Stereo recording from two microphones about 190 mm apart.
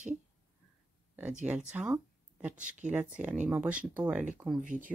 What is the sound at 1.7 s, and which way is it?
Speech, 5° right (ahead or behind).